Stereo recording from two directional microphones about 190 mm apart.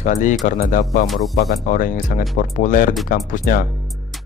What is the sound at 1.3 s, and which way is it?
Speech, 50° left (ahead or behind).